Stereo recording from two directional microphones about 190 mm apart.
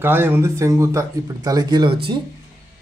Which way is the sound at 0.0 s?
10° right (ahead or behind).